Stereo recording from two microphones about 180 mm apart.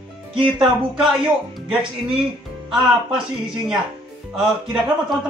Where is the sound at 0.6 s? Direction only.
Centre (ahead or behind).